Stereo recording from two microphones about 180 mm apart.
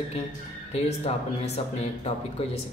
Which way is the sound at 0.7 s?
35° left (ahead or behind).